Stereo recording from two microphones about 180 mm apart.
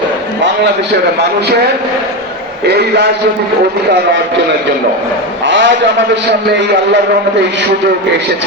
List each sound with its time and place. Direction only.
1.2 s a man's voice: 65° right (ahead or behind)
5.5 s a sound: 90° right
6.5 s a man's voice: 75° right (ahead or behind)